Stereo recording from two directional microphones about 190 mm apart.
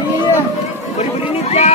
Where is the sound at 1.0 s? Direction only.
35° left (ahead or behind).